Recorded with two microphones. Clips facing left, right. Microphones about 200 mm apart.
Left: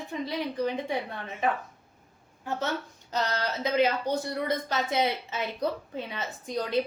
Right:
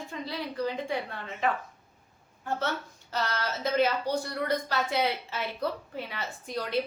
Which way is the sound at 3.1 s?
15° left (ahead or behind).